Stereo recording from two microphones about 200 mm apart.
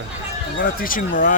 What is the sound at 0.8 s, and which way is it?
Speech, 40° left (ahead or behind).